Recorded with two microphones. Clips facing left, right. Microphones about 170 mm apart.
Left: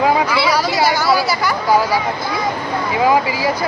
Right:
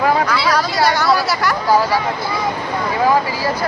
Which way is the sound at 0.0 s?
5° left (ahead or behind).